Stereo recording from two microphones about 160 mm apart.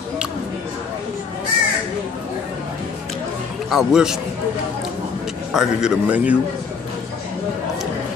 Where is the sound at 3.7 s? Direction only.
5° right (ahead or behind).